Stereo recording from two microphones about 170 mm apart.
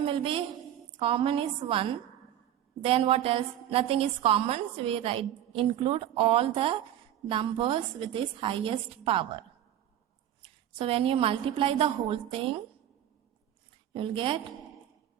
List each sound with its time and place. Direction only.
0.0 s a woman's voice: 30° right (ahead or behind)
10.4 s a woman's voice: 35° right (ahead or behind)
13.9 s a woman's voice: 30° right (ahead or behind)